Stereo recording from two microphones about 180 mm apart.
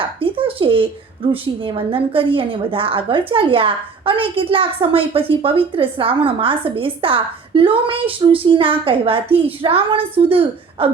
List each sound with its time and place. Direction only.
0.0 s a woman's voice: 30° right (ahead or behind)